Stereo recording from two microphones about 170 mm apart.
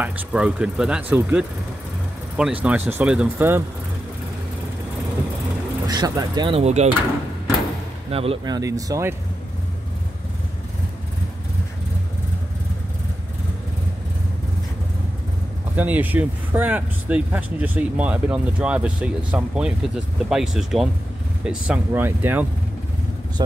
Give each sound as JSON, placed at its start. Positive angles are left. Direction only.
{"t": 0.0, "sound": "speech", "side_deg": -5}
{"t": 5.9, "sound": "speech", "side_deg": -20}
{"t": 6.5, "sound": "speech", "side_deg": -40}
{"t": 8.1, "sound": "speech", "side_deg": -35}
{"t": 8.5, "sound": "speech", "side_deg": -20}
{"t": 15.7, "sound": "speech", "side_deg": -10}